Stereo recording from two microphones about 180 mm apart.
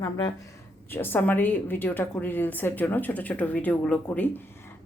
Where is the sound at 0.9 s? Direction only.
10° left (ahead or behind).